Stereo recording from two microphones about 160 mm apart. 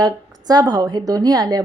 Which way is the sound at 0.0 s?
25° right (ahead or behind).